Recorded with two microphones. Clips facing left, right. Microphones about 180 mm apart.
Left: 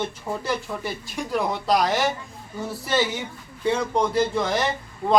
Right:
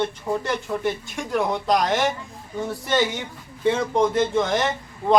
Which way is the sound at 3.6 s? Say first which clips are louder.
Right 2 dB; centre (ahead or behind).